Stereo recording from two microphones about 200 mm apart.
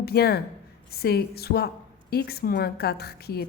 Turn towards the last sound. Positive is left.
turn(degrees=50)  # may be behind; listen again after turning